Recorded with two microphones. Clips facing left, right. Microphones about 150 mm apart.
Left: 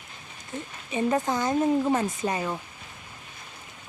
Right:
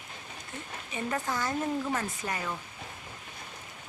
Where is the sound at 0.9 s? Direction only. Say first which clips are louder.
Left 8 dB; 20° left (ahead or behind).